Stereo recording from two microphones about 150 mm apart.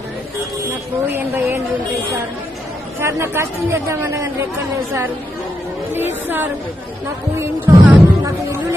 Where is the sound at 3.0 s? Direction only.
15° right (ahead or behind).